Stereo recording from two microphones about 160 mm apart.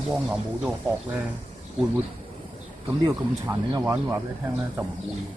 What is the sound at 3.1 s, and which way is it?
Speech, 15° right (ahead or behind).